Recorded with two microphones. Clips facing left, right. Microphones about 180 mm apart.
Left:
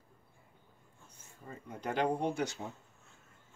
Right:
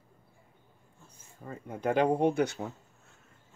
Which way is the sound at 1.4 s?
55° right (ahead or behind).